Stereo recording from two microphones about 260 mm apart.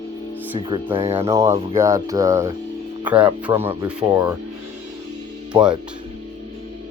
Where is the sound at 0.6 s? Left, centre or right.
Centre.